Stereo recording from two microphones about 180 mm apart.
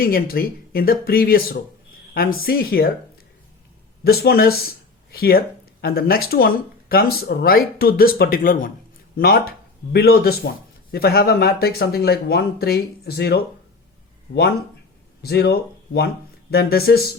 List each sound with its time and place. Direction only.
0.0 s speech: 55° left (ahead or behind)
4.0 s speech: 60° left (ahead or behind)
15.2 s speech: 60° left (ahead or behind)